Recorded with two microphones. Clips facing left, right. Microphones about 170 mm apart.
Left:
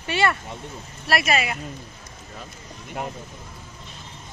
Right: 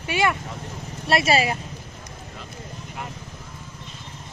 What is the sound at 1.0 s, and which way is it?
Speech, 25° right (ahead or behind).